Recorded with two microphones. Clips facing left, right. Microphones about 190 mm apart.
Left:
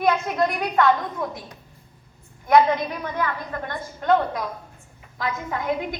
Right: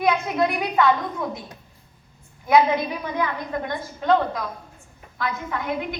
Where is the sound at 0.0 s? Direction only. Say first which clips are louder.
Even; centre (ahead or behind).